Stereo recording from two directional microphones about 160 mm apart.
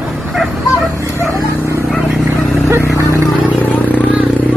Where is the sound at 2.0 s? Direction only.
10° right (ahead or behind).